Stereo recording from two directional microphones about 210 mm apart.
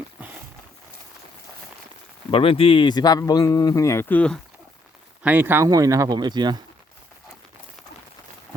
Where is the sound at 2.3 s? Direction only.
25° left (ahead or behind); by 4.4 s 5° left (ahead or behind).